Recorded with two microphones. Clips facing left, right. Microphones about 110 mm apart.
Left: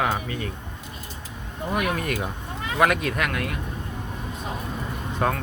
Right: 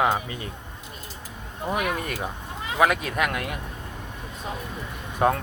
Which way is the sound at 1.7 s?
5° right (ahead or behind).